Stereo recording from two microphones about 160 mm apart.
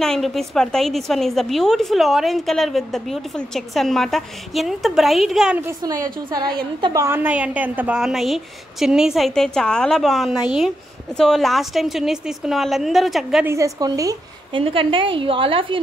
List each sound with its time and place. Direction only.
0.0 s a woman's voice: centre (ahead or behind)
5.6 s a woman's voice: 20° right (ahead or behind); by 13.5 s centre (ahead or behind)
13.5 s a woman's voice: 20° right (ahead or behind)
14.5 s a woman's voice: 35° right (ahead or behind)